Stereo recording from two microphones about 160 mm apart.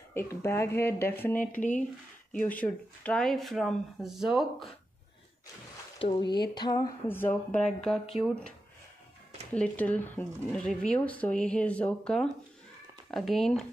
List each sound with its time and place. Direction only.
0.1 s speech: 15° left (ahead or behind)
1.6 s speech: 50° left (ahead or behind)
2.3 s speech: 10° left (ahead or behind)
6.1 s speech: 25° left (ahead or behind)
7.1 s speech: 10° left (ahead or behind)